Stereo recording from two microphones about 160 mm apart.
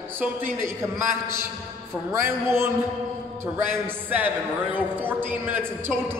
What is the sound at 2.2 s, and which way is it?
Speech, 15° right (ahead or behind).